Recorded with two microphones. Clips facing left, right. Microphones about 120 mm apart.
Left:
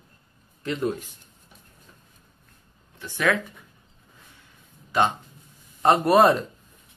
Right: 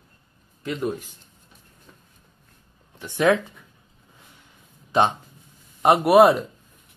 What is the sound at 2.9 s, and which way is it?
Speech, 25° right (ahead or behind).